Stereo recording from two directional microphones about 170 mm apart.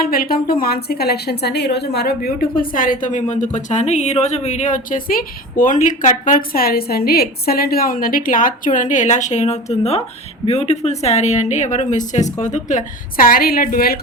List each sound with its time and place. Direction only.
0.1 s a woman's voice: 60° left (ahead or behind)